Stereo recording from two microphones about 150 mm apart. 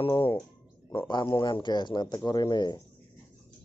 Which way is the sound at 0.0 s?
35° left (ahead or behind).